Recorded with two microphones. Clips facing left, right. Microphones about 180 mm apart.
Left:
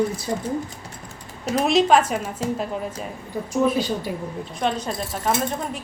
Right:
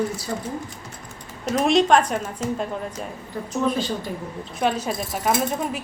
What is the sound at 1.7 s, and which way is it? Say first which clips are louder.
Speech: even; 5° left (ahead or behind).